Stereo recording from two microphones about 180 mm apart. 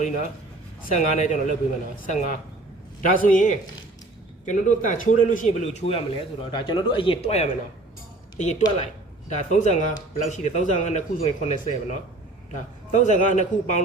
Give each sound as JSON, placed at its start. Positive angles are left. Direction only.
{"t": 0.0, "sound": "speech", "side_deg": 45}
{"t": 6.5, "sound": "speech", "side_deg": 30}